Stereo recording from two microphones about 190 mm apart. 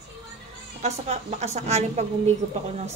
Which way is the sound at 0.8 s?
35° right (ahead or behind).